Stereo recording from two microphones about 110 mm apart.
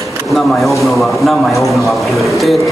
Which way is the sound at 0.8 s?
Centre (ahead or behind).